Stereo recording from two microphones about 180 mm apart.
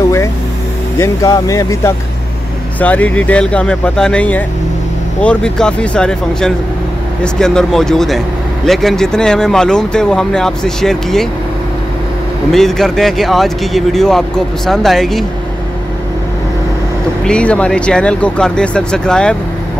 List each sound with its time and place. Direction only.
0.9 s speech: 15° left (ahead or behind)
12.4 s speech: centre (ahead or behind)
17.3 s speech: 5° left (ahead or behind)